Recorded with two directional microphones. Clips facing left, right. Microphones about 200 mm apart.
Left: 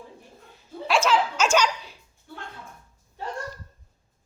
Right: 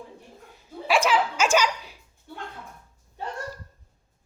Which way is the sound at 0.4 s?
15° right (ahead or behind).